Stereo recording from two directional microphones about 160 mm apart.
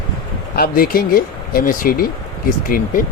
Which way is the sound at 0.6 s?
65° left (ahead or behind).